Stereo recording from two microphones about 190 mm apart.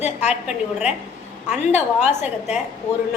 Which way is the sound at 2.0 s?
35° left (ahead or behind).